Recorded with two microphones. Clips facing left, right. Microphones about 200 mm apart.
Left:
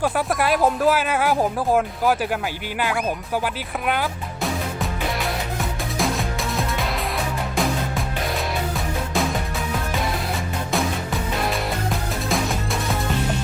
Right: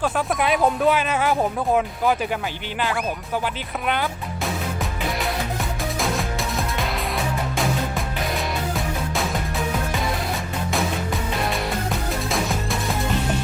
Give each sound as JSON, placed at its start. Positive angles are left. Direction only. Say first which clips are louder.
{"t": 0.0, "sound": "speech", "louder": "left 1 dB", "side_deg": 5}
{"t": 6.0, "sound": "music", "louder": "left 2 dB", "side_deg": 0}